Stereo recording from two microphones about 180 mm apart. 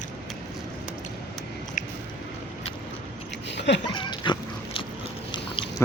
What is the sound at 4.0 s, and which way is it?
Dog, 25° left (ahead or behind).